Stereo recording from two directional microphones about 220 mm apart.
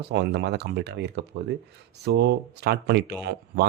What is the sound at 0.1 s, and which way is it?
A man's voice, 50° right (ahead or behind).